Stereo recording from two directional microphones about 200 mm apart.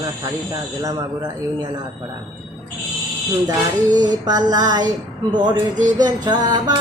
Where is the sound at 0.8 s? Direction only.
20° right (ahead or behind).